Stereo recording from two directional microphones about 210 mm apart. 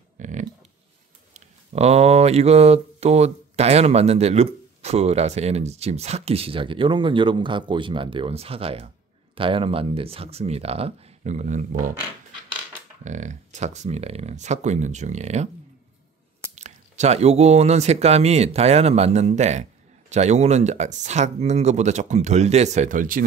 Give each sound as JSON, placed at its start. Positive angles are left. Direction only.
{"t": 0.2, "sound": "a sound", "side_deg": -35}
{"t": 1.3, "sound": "speech", "side_deg": -30}
{"t": 13.0, "sound": "speech", "side_deg": -35}
{"t": 16.5, "sound": "speech", "side_deg": -35}